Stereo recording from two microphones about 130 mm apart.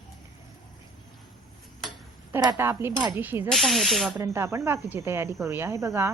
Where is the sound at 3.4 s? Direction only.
Centre (ahead or behind).